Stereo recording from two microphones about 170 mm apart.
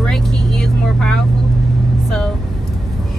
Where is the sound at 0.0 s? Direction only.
Centre (ahead or behind).